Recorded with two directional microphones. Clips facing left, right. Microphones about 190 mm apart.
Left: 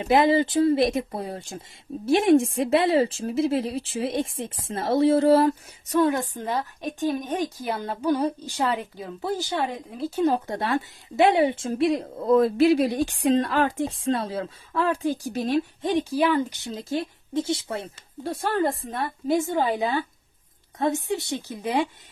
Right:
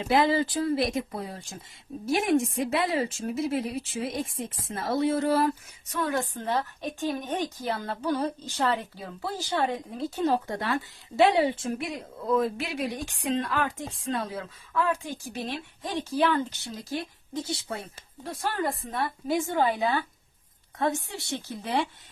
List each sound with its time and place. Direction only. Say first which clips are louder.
0.1 s speech: left 4 dB; 25° left (ahead or behind)
6.1 s a woman's voice: left 3 dB; 15° left (ahead or behind); by 15.5 s 40° left (ahead or behind)
15.8 s speech: right 1 dB; 20° left (ahead or behind)
19.5 s a woman's voice: left 1 dB; 20° left (ahead or behind)